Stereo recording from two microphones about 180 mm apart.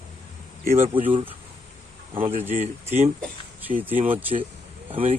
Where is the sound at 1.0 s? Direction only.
30° right (ahead or behind).